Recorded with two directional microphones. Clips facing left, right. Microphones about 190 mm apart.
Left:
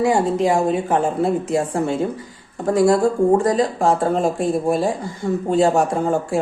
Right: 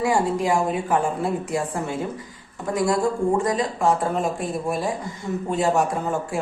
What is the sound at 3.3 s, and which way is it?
A woman's voice, 35° left (ahead or behind).